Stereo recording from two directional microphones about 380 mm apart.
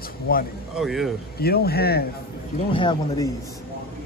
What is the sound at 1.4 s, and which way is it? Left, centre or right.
Speech, left.